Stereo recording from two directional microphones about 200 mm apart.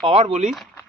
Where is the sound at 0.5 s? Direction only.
Centre (ahead or behind).